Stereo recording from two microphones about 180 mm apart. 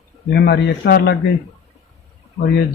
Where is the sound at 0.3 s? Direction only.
65° left (ahead or behind).